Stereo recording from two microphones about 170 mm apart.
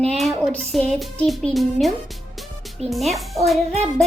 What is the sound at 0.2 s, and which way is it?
A child's voice, centre (ahead or behind).